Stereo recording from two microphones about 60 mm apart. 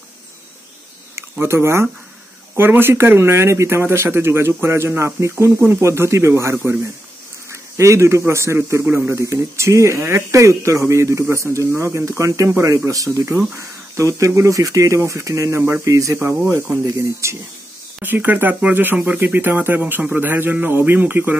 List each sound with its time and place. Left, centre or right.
1.4 s speech: right
7.7 s speech: right
12.7 s speech: right
13.6 s speech: right
18.0 s a man's voice: right
19.8 s a man's voice: right
20.2 s a man's voice: right